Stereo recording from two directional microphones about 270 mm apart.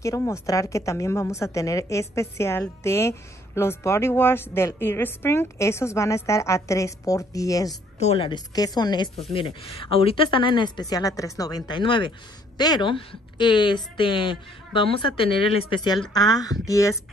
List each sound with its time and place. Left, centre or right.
0.0 s a woman's voice: centre